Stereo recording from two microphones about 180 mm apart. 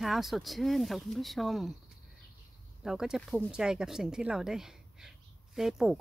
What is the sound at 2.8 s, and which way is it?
Speech, 5° right (ahead or behind).